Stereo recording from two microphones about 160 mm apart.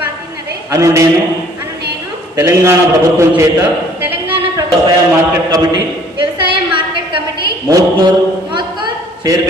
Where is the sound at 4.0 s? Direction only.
10° right (ahead or behind).